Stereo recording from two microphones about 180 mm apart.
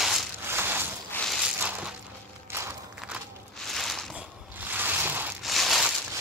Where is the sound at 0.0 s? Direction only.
Centre (ahead or behind).